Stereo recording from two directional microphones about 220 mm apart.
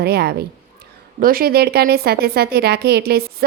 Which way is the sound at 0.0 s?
45° right (ahead or behind).